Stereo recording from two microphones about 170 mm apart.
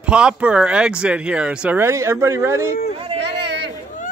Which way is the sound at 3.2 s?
85° right.